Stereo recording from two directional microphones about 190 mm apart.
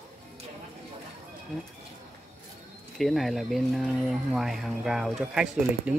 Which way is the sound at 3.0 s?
Centre (ahead or behind).